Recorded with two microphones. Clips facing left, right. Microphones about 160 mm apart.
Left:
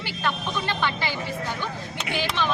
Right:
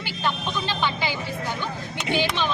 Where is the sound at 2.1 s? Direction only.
25° right (ahead or behind).